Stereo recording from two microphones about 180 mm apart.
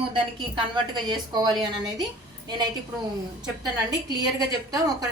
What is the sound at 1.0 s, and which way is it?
Speech, 25° right (ahead or behind).